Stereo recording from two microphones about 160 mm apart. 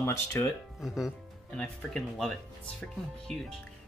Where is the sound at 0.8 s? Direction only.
Centre (ahead or behind).